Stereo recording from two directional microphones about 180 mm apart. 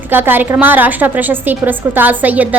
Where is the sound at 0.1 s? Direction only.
10° right (ahead or behind).